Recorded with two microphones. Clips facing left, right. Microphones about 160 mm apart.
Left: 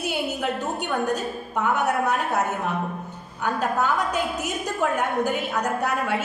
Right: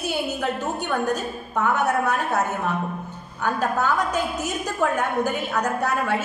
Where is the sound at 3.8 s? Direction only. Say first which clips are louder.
Right 1 dB; 15° left (ahead or behind).